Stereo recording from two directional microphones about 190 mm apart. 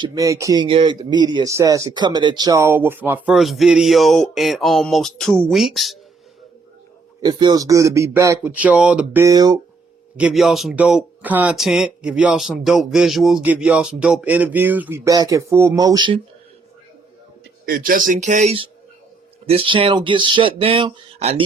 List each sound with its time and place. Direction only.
0.0 s speech: 20° right (ahead or behind); by 6.0 s centre (ahead or behind)
7.2 s speech: 20° right (ahead or behind); by 9.2 s 5° right (ahead or behind)
9.2 s speech: 20° right (ahead or behind)
10.2 s speech: 5° right (ahead or behind); by 16.1 s 20° right (ahead or behind)
17.7 s speech: 50° right (ahead or behind); by 21.4 s 30° right (ahead or behind)